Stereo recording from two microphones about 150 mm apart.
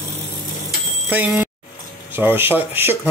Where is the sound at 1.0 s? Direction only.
10° right (ahead or behind).